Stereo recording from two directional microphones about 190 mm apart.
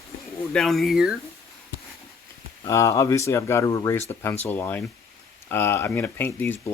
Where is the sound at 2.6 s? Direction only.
15° left (ahead or behind).